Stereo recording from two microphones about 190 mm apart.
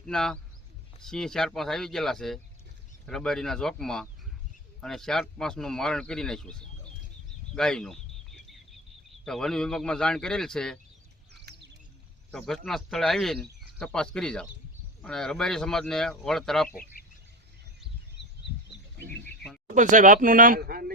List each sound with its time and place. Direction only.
0.0 s speech: 5° left (ahead or behind)
7.5 s a sound: 5° left (ahead or behind)
9.0 s speech: centre (ahead or behind)
12.3 s speech: centre (ahead or behind)
16.9 s a sound: 50° left (ahead or behind)
19.7 s speech: 40° right (ahead or behind)